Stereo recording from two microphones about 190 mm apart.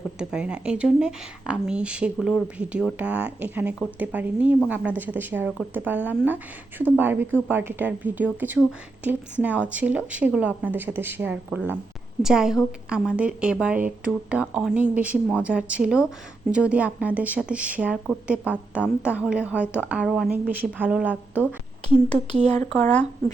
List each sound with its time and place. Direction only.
0.2 s a woman's voice: 5° right (ahead or behind)
21.8 s speech: 35° right (ahead or behind)